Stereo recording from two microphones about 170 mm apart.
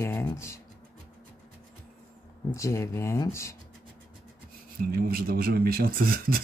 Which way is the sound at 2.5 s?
15° left (ahead or behind).